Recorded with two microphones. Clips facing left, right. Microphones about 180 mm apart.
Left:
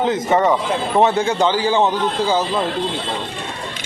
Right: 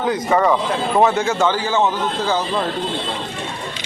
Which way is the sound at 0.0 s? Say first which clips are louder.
Left 1 dB; 25° left (ahead or behind).